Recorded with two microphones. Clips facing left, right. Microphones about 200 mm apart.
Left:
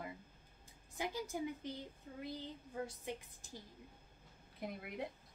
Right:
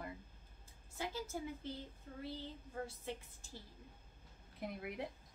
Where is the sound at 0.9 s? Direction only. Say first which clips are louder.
Left 2 dB; 15° left (ahead or behind).